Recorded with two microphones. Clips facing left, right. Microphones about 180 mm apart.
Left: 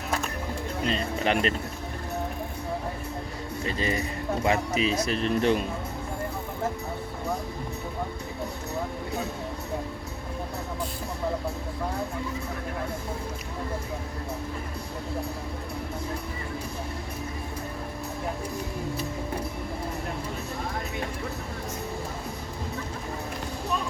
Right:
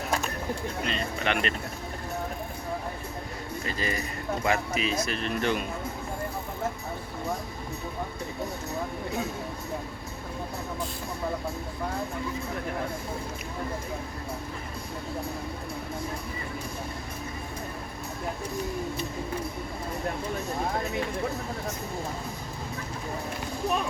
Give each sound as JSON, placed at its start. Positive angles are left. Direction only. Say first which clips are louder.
{"t": 0.9, "sound": "speech", "louder": "left 4 dB", "side_deg": 35}
{"t": 3.7, "sound": "speech", "louder": "left 4 dB", "side_deg": 25}